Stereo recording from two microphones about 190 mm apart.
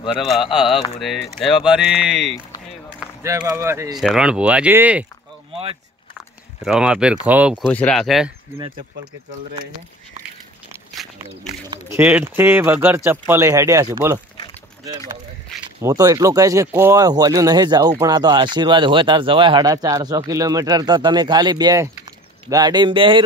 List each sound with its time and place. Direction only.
0.0 s speech: centre (ahead or behind)
3.0 s speech: 10° right (ahead or behind)
3.9 s speech: centre (ahead or behind)
6.6 s speech: 5° right (ahead or behind)
7.7 s speech: 5° left (ahead or behind)
8.5 s speech: 25° right (ahead or behind)
11.4 s speech: 10° right (ahead or behind)
15.8 s speech: 15° right (ahead or behind)